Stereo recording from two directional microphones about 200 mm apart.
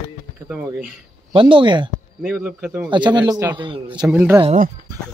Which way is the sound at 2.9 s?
25° right (ahead or behind).